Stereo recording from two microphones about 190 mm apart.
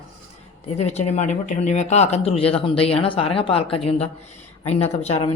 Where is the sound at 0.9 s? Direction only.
35° left (ahead or behind).